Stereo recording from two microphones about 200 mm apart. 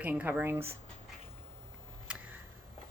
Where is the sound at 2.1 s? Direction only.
5° right (ahead or behind).